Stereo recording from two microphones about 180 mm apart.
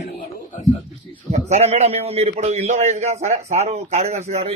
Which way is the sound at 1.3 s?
40° right (ahead or behind).